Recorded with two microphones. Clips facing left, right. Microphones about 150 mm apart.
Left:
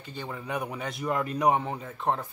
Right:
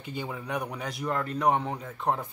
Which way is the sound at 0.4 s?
5° left (ahead or behind).